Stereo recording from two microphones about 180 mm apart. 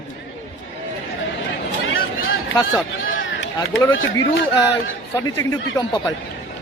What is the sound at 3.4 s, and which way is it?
Speech, 90° left.